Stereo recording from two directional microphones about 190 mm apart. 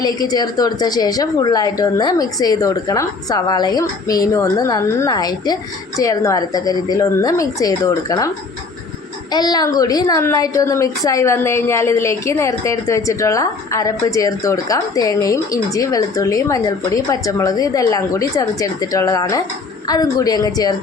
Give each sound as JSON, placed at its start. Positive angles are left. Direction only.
{"t": 0.0, "sound": "a woman's voice", "side_deg": 20}
{"t": 9.3, "sound": "a woman's voice", "side_deg": 20}